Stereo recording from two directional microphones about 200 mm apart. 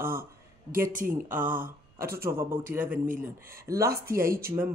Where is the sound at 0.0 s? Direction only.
45° right (ahead or behind).